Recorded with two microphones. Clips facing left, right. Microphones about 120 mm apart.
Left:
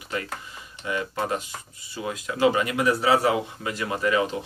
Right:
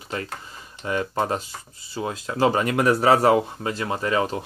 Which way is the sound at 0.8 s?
40° right (ahead or behind).